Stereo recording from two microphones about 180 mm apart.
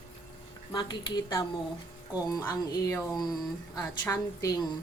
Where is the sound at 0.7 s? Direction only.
25° left (ahead or behind).